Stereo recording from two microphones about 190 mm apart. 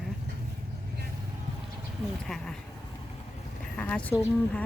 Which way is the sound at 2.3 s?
Centre (ahead or behind).